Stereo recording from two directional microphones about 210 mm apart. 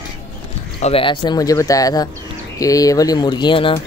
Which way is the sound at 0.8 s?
25° left (ahead or behind).